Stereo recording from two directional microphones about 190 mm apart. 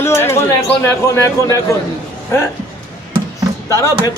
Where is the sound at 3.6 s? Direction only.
15° left (ahead or behind).